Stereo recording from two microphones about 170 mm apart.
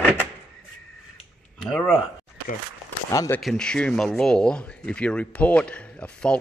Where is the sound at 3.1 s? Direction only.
20° left (ahead or behind).